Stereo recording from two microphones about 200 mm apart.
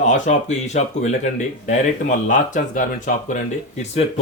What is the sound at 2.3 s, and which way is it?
Speech, 40° left (ahead or behind).